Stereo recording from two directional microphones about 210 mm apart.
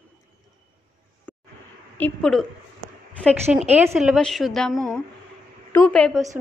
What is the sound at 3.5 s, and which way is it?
A woman's voice, 5° right (ahead or behind).